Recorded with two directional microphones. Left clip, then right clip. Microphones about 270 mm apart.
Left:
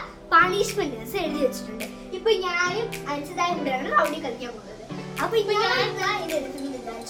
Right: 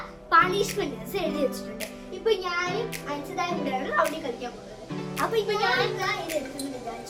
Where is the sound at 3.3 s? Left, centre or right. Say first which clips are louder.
Left 4 dB; centre.